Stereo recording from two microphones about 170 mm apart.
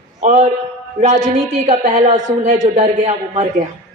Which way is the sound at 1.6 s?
45° right (ahead or behind).